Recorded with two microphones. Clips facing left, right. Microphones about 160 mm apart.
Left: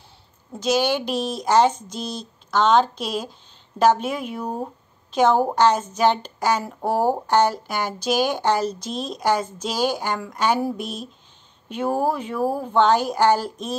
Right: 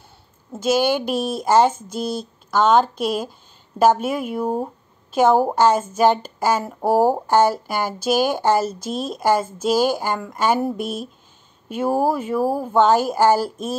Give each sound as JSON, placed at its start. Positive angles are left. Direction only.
{"t": 0.7, "sound": "speech", "side_deg": -5}
{"t": 0.9, "sound": "a woman's voice", "side_deg": -50}
{"t": 1.4, "sound": "a woman's voice", "side_deg": -5}
{"t": 1.8, "sound": "a woman's voice", "side_deg": -50}
{"t": 2.5, "sound": "speech", "side_deg": -5}
{"t": 3.0, "sound": "a woman's voice", "side_deg": -50}
{"t": 3.7, "sound": "speech", "side_deg": -5}
{"t": 8.7, "sound": "a woman's voice", "side_deg": -50}
{"t": 9.1, "sound": "a woman's voice", "side_deg": -5}
{"t": 10.8, "sound": "a woman's voice", "side_deg": -50}
{"t": 11.7, "sound": "speech", "side_deg": -10}